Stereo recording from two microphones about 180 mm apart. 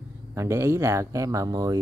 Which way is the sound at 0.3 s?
15° right (ahead or behind).